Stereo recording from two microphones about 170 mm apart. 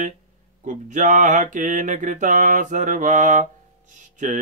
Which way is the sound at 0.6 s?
45° right (ahead or behind).